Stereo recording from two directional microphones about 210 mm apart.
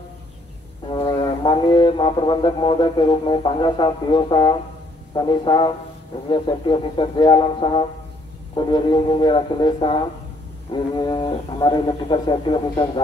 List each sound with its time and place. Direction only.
0.8 s speech: 20° left (ahead or behind)